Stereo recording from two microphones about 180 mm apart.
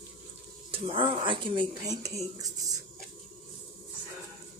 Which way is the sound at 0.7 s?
30° right (ahead or behind).